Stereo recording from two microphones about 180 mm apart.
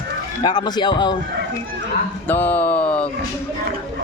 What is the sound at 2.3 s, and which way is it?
Speech, 10° left (ahead or behind).